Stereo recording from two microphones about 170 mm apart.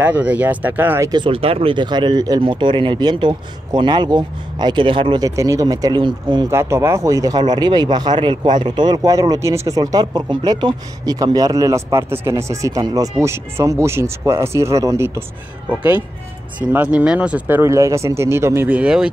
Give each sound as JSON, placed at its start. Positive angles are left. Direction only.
{"t": 0.0, "sound": "speech", "side_deg": -10}
{"t": 6.5, "sound": "speech", "side_deg": -15}
{"t": 16.5, "sound": "speech", "side_deg": -10}